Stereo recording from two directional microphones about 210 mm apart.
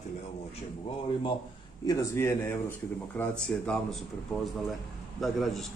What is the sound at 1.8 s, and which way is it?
Speech, 15° left (ahead or behind).